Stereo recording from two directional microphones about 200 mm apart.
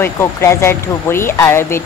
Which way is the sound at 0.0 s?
10° left (ahead or behind).